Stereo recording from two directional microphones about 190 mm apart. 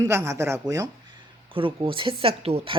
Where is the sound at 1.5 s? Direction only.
25° right (ahead or behind).